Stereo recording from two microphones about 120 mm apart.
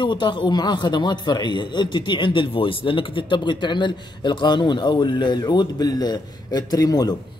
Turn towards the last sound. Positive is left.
turn(degrees=35)  # may be behind; listen again after turning